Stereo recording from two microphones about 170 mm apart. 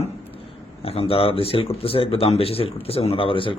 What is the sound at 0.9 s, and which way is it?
A man's voice, 35° left (ahead or behind).